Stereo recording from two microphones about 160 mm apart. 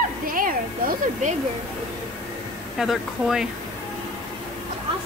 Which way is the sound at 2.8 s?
Centre (ahead or behind).